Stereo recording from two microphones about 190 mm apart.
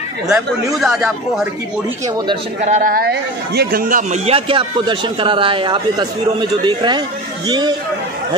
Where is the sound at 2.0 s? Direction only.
20° right (ahead or behind).